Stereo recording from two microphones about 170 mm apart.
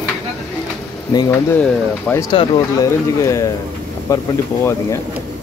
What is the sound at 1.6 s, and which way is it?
Speech, 10° left (ahead or behind).